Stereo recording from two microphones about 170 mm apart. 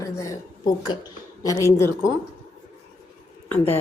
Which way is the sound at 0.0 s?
20° left (ahead or behind).